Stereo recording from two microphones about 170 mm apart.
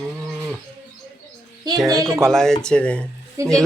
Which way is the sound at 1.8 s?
20° right (ahead or behind).